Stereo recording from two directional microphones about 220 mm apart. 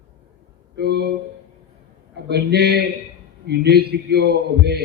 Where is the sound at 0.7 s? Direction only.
50° right (ahead or behind).